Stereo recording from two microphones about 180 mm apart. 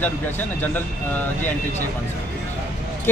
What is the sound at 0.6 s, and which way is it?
Speech, 10° left (ahead or behind).